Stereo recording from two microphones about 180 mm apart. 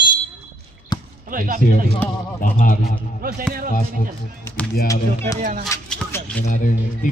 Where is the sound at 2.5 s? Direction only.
50° left (ahead or behind).